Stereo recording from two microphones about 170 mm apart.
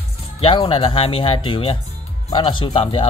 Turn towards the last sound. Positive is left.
turn(degrees=30)  # may be behind; listen again after turning